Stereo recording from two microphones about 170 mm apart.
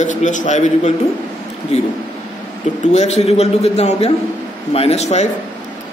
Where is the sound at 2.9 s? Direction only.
40° left (ahead or behind).